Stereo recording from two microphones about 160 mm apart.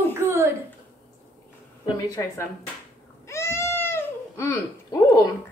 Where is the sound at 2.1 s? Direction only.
15° left (ahead or behind).